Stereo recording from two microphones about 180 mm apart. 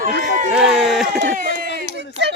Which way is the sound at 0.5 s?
5° right (ahead or behind).